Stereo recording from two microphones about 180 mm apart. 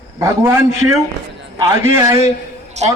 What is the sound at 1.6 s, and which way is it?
Speech, 15° right (ahead or behind).